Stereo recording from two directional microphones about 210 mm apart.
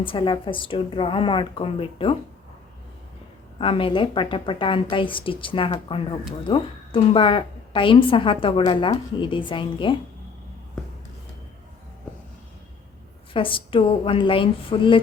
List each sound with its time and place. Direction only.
0.0 s a woman's voice: 25° left (ahead or behind)
3.6 s a woman's voice: 25° left (ahead or behind)
13.3 s a woman's voice: 25° left (ahead or behind)